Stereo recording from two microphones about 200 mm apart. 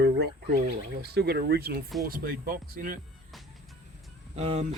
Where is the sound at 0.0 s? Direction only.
50° right (ahead or behind).